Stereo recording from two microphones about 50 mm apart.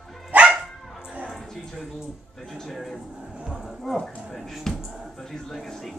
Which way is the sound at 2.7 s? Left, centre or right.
Centre.